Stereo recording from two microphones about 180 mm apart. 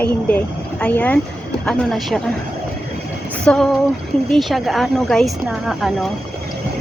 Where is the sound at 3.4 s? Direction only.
5° left (ahead or behind).